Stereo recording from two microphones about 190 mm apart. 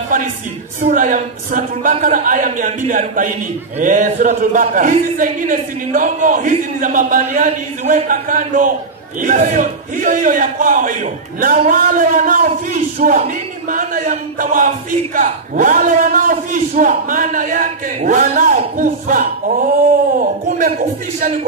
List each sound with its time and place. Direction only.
0.7 s a man's voice: 45° right (ahead or behind)